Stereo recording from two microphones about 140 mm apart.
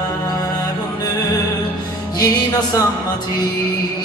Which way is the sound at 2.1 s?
25° left (ahead or behind).